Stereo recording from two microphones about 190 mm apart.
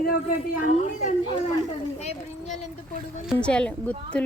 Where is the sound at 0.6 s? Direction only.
40° left (ahead or behind).